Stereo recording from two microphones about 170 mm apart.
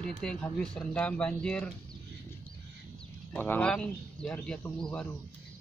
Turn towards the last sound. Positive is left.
turn(degrees=5)  # may be behind; listen again after turning